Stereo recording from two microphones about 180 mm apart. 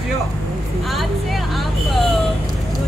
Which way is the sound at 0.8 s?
Centre (ahead or behind).